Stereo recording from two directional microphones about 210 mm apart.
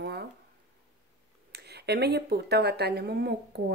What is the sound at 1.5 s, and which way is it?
Speech, 50° right (ahead or behind).